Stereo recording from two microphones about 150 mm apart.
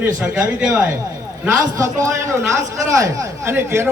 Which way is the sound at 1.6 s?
20° right (ahead or behind).